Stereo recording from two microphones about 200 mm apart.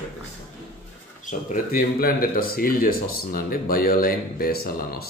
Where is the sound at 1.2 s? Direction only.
45° left (ahead or behind).